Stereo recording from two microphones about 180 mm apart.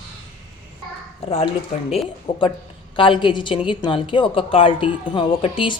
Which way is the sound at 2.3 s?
25° left (ahead or behind).